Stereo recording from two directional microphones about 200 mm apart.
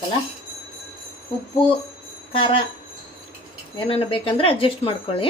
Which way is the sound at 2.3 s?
25° left (ahead or behind).